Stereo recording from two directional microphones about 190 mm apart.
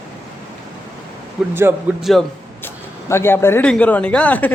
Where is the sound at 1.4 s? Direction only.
5° right (ahead or behind).